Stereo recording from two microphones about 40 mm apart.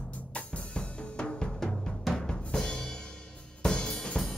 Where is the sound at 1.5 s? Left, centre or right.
Centre.